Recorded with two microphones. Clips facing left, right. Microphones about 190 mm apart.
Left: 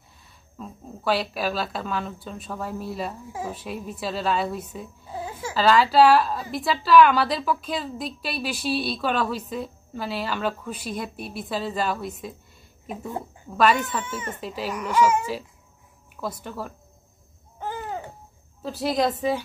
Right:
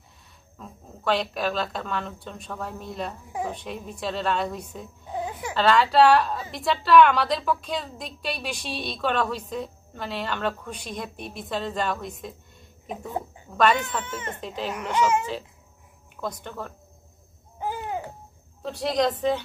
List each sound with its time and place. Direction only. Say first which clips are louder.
0.6 s a woman's voice: left 5 dB; 5° left (ahead or behind)
5.1 s a sound: right 2 dB; 20° right (ahead or behind)
5.5 s a woman's voice: left 2 dB; centre (ahead or behind)
17.6 s babbling: right 1 dB; 10° right (ahead or behind)
18.6 s speech: even; 5° left (ahead or behind)